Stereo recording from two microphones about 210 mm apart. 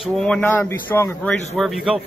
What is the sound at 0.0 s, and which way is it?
A man's voice, 5° left (ahead or behind).